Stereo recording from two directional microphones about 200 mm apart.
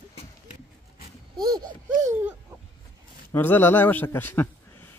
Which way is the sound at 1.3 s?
20° right (ahead or behind).